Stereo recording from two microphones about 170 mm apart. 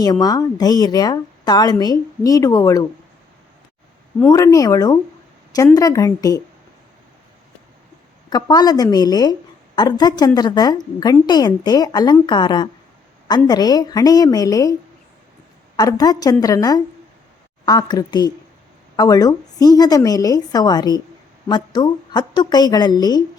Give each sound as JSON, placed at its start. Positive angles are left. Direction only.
{"t": 0.0, "sound": "a woman's voice", "side_deg": 20}
{"t": 4.3, "sound": "a woman's voice", "side_deg": 20}
{"t": 8.3, "sound": "a woman's voice", "side_deg": 25}